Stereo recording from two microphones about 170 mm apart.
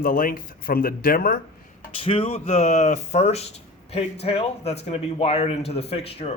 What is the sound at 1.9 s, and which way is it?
Speech, 30° left (ahead or behind).